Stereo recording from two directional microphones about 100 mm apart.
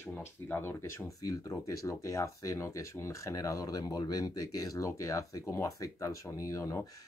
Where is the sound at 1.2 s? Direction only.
35° left (ahead or behind).